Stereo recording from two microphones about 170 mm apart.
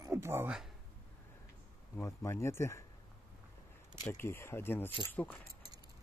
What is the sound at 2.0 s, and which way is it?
Speech, 15° left (ahead or behind).